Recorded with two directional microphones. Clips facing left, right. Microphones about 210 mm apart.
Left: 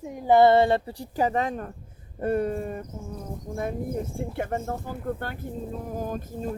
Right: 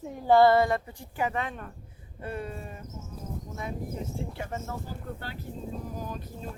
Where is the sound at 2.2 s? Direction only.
50° left (ahead or behind).